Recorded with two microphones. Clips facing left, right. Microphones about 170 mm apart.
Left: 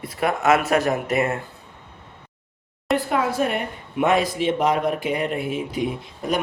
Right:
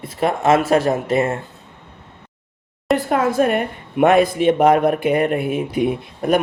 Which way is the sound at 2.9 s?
50° right (ahead or behind).